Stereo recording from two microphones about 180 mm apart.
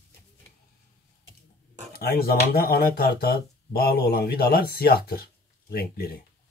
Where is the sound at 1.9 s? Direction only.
60° left (ahead or behind).